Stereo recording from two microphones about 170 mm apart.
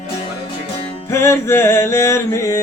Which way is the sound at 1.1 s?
15° left (ahead or behind).